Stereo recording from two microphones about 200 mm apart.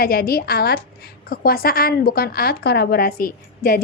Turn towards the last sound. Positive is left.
turn(degrees=45)  # may be behind; listen again after turning